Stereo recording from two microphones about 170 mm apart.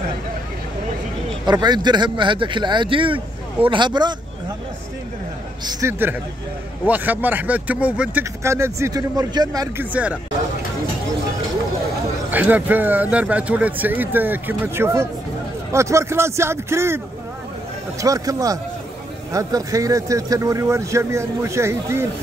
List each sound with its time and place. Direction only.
1.4 s speech: 25° right (ahead or behind)
5.7 s speech: 15° right (ahead or behind)
12.3 s speech: 10° right (ahead or behind)
18.0 s speech: 20° right (ahead or behind)